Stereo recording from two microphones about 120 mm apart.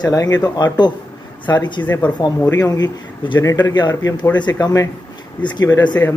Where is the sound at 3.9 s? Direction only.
30° left (ahead or behind).